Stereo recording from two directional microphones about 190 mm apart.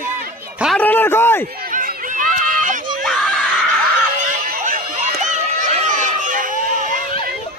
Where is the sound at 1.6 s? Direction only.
45° right (ahead or behind).